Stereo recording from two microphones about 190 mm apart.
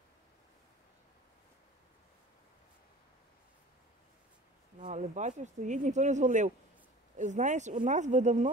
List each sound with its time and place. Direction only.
4.7 s speech: 40° right (ahead or behind)